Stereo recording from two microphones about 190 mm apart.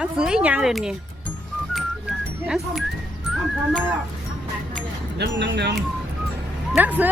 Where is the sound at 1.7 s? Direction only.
Centre (ahead or behind).